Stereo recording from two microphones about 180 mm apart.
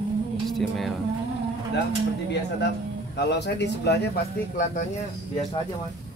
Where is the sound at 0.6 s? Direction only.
Centre (ahead or behind).